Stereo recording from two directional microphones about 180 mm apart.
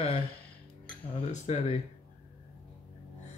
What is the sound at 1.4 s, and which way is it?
Speech, 35° left (ahead or behind).